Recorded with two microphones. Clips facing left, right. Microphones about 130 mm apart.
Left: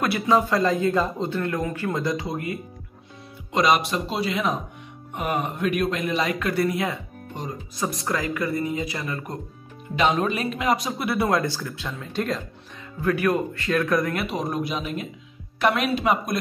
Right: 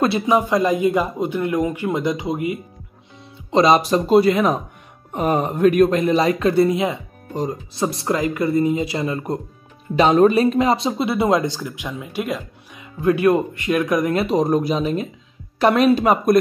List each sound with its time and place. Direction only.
0.3 s a man's voice: 15° right (ahead or behind)
3.5 s speech: 30° right (ahead or behind)
4.2 s speech: 50° right (ahead or behind)
5.1 s speech: 35° right (ahead or behind)
7.3 s speech: 30° right (ahead or behind)
9.9 s speech: 40° right (ahead or behind); by 12.4 s 10° right (ahead or behind)
13.0 s speech: 20° right (ahead or behind)
14.1 s speech: 35° right (ahead or behind)